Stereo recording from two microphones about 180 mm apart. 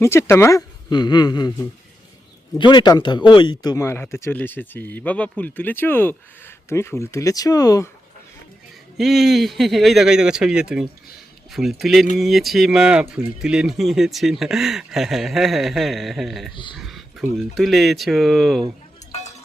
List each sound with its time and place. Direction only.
0.0 s a woman's voice: 15° left (ahead or behind)
9.0 s speech: centre (ahead or behind)